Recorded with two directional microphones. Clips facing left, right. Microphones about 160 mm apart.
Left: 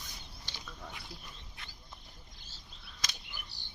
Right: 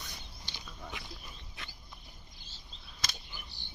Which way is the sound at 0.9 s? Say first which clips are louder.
Right 3 dB; 90° right.